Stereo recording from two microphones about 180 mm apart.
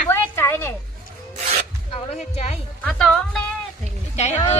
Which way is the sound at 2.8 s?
5° left (ahead or behind).